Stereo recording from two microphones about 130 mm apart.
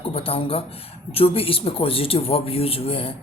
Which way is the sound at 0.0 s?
45° left (ahead or behind).